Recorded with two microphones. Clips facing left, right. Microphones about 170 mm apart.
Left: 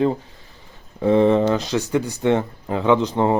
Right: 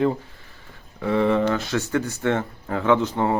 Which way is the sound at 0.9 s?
25° left (ahead or behind).